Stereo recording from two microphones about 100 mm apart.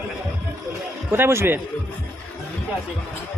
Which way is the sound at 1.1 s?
25° right (ahead or behind).